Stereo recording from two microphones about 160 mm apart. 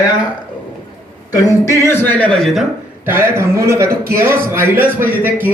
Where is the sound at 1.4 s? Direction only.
20° left (ahead or behind); by 2.6 s centre (ahead or behind).